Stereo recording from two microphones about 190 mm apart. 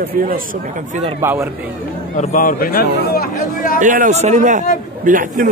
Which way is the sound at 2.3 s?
50° left (ahead or behind).